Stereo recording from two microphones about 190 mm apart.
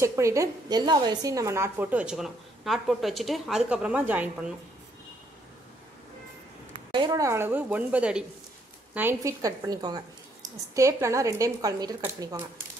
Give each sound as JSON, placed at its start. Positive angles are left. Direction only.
{"t": 0.0, "sound": "a woman's voice", "side_deg": -15}
{"t": 6.9, "sound": "a woman's voice", "side_deg": -20}